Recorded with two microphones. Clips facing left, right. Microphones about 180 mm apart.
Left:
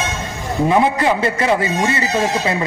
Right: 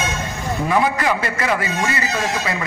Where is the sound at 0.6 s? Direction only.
20° left (ahead or behind).